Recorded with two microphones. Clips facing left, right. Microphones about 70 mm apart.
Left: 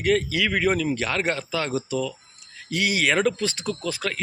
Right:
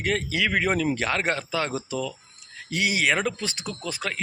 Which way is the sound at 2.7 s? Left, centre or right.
Right.